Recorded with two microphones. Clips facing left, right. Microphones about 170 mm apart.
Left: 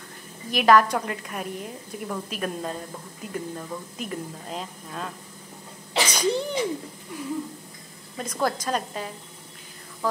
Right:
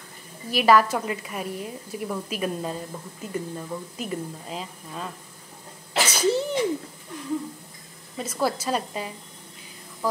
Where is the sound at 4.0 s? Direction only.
Centre (ahead or behind).